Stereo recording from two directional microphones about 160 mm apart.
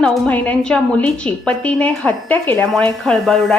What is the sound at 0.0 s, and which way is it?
A woman's voice, 5° left (ahead or behind).